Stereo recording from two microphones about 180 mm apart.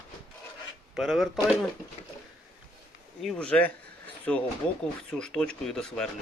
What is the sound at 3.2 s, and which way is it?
Speech, 5° left (ahead or behind).